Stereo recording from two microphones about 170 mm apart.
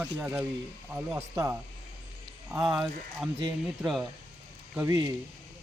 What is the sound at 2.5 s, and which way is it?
Speech, 5° right (ahead or behind).